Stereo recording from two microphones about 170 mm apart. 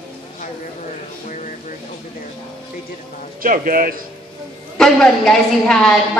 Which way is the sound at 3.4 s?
55° right (ahead or behind).